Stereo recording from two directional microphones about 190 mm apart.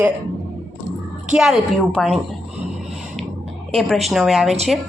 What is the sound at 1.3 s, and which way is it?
Speech, centre (ahead or behind).